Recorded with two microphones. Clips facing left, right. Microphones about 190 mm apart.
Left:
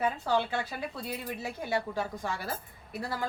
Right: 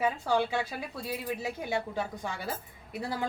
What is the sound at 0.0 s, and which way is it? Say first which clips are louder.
Speech: right 1 dB; 10° right (ahead or behind).